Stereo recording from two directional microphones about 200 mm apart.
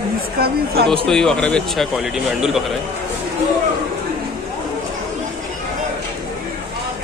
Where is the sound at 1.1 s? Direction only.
5° left (ahead or behind).